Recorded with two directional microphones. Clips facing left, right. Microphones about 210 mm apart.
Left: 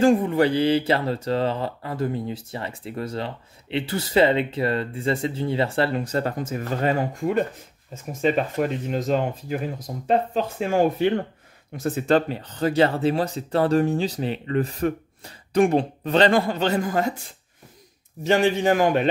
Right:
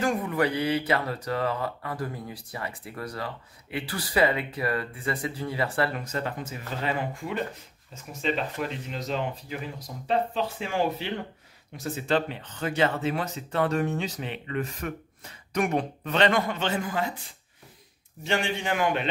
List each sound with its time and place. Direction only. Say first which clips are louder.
0.0 s speech: left 8 dB; 30° left (ahead or behind)
6.2 s speech: left 7 dB; 45° left (ahead or behind)
18.2 s speech: left 9 dB; 40° left (ahead or behind)